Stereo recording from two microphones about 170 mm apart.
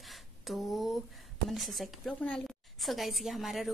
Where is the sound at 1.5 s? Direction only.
Centre (ahead or behind).